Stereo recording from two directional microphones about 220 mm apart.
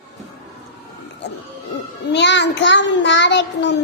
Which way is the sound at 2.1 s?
55° left (ahead or behind).